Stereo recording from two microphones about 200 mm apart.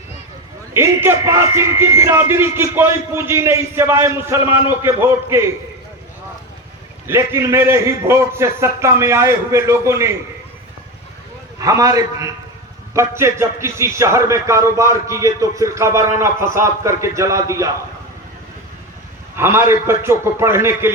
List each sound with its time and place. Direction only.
0.7 s a man's voice: 10° right (ahead or behind)
7.1 s a man's voice: 15° right (ahead or behind)
11.6 s a man's voice: 15° right (ahead or behind)
19.4 s a man's voice: 10° right (ahead or behind)